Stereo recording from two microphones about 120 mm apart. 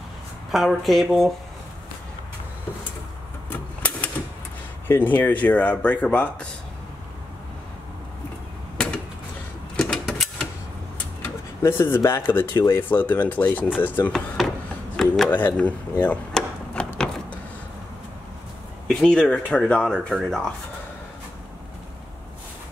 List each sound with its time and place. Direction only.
0.5 s speech: centre (ahead or behind)
3.4 s a sound: 15° left (ahead or behind)
4.8 s speech: 15° left (ahead or behind)
9.8 s typewriter: 5° left (ahead or behind)
11.6 s speech: 20° left (ahead or behind)
14.1 s speech: centre (ahead or behind)
15.0 s a sound: centre (ahead or behind)
15.3 s a sound: 15° left (ahead or behind)
18.9 s speech: 5° left (ahead or behind)